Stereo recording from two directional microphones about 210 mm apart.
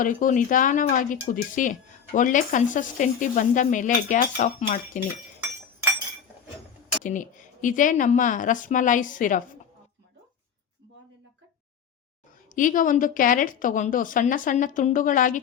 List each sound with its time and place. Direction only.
0.0 s a woman's voice: 40° left (ahead or behind)
7.0 s a woman's voice: 40° left (ahead or behind)
12.5 s a woman's voice: 40° left (ahead or behind)